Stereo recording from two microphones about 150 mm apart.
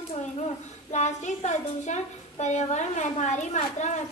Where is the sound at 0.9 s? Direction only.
50° left (ahead or behind).